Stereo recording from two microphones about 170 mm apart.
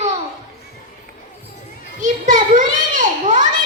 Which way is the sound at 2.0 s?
50° right (ahead or behind).